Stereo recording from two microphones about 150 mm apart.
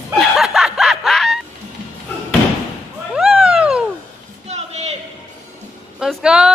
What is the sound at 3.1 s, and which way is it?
Cat, 5° right (ahead or behind).